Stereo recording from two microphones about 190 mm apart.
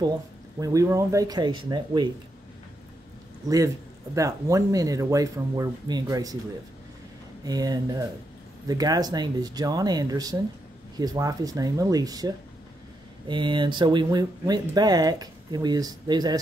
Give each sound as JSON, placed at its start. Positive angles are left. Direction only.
{"t": 0.6, "sound": "speech", "side_deg": -15}
{"t": 3.4, "sound": "speech", "side_deg": -15}
{"t": 7.4, "sound": "speech", "side_deg": -20}